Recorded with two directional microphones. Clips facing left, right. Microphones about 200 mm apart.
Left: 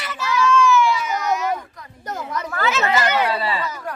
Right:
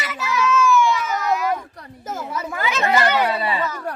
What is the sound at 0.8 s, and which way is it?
Baby cry, 15° left (ahead or behind).